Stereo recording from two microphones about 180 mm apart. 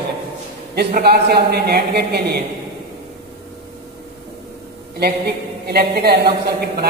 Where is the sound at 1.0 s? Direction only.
60° right (ahead or behind).